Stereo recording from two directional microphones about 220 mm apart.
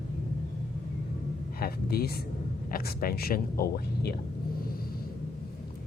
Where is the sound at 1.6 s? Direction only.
45° left (ahead or behind).